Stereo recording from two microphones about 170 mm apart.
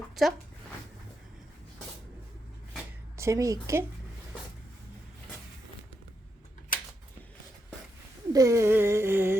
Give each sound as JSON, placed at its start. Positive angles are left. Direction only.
{"t": 0.2, "sound": "speech", "side_deg": 0}
{"t": 3.2, "sound": "humming", "side_deg": -20}
{"t": 8.3, "sound": "humming", "side_deg": -20}